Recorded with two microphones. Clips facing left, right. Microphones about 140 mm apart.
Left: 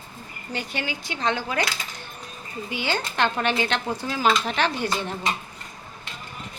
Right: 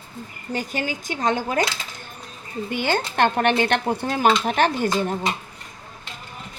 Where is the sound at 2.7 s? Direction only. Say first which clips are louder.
Right 4 dB; 50° right (ahead or behind).